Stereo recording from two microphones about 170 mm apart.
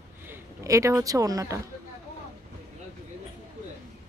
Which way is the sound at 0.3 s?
15° right (ahead or behind).